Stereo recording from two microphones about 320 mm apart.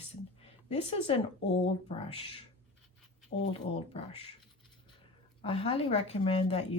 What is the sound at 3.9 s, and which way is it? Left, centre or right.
Speech, centre.